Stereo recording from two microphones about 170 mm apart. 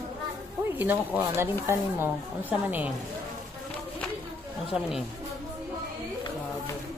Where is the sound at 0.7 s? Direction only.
10° right (ahead or behind).